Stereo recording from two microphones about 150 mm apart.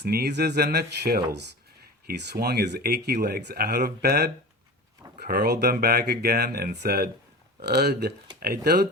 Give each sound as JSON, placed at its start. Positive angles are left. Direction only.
{"t": 0.0, "sound": "speech", "side_deg": -90}